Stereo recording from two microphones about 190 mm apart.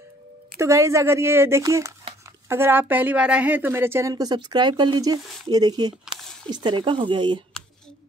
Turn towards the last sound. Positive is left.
turn(degrees=-25)  # may be behind; listen again after turning